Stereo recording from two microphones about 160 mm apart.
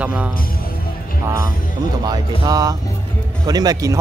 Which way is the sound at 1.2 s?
20° right (ahead or behind).